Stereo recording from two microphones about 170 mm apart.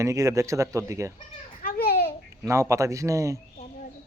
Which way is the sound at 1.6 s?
65° left (ahead or behind).